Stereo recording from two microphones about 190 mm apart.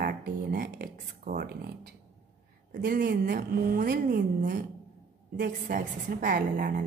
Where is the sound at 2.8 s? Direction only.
50° right (ahead or behind).